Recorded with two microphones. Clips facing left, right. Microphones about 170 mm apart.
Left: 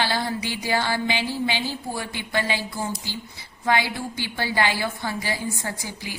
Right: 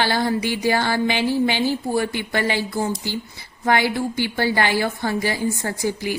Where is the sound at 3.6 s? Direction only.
50° right (ahead or behind).